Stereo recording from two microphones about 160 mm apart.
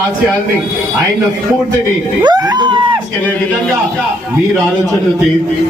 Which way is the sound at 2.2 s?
25° right (ahead or behind).